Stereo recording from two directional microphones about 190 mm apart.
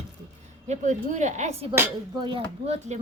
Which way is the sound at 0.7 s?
40° right (ahead or behind).